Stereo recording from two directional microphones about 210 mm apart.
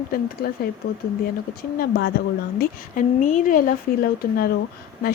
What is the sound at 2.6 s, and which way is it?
A woman's voice, 40° left (ahead or behind).